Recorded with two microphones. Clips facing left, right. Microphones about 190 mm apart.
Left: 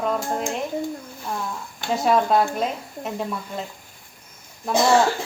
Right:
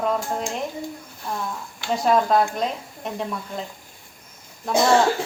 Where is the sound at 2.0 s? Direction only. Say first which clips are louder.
Even; 5° left (ahead or behind).